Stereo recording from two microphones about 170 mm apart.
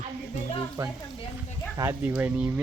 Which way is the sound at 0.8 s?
20° right (ahead or behind).